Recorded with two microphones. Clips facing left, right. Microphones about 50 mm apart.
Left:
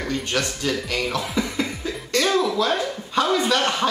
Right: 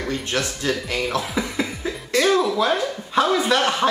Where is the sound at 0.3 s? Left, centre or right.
Centre.